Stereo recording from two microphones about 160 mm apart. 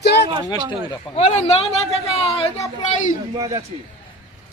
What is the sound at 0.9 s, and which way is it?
A man's voice, 40° left (ahead or behind).